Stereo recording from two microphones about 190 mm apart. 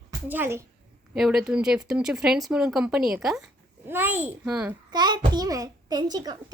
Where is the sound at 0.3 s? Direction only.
10° right (ahead or behind).